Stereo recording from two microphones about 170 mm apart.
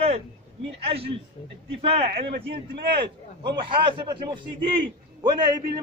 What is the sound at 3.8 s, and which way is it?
A man's voice, 30° right (ahead or behind).